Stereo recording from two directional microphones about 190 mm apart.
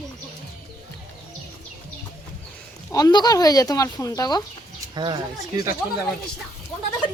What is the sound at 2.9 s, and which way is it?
Speech, 20° left (ahead or behind).